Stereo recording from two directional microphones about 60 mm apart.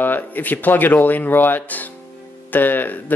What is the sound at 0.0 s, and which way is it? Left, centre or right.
Speech, left.